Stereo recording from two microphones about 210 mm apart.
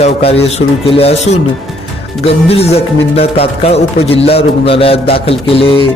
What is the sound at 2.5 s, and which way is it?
Speech, 30° left (ahead or behind).